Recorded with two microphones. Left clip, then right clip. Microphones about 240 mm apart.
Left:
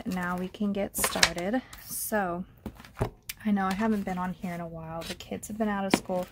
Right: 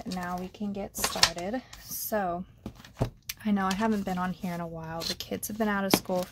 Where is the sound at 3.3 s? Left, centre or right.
Centre.